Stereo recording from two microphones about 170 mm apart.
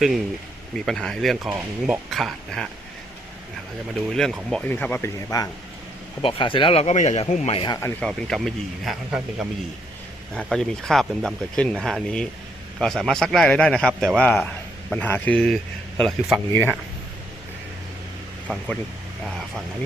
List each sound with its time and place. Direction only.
0.9 s speech: 5° left (ahead or behind)
4.1 s speech: centre (ahead or behind); by 5.5 s 20° left (ahead or behind)
6.2 s speech: 30° left (ahead or behind)
8.0 s speech: centre (ahead or behind)
16.5 s speech: 15° left (ahead or behind)